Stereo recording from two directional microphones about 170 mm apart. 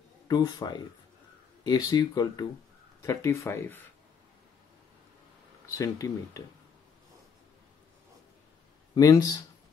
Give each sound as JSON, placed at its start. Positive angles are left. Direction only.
{"t": 0.3, "sound": "speech", "side_deg": 25}
{"t": 5.7, "sound": "speech", "side_deg": 20}
{"t": 8.9, "sound": "speech", "side_deg": 20}